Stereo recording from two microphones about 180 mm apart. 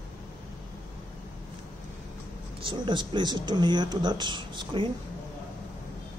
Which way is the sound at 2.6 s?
25° right (ahead or behind).